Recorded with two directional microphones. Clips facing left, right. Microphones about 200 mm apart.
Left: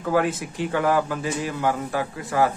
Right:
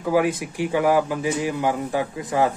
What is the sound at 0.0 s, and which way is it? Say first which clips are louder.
A man's voice: right 2 dB; 15° right (ahead or behind).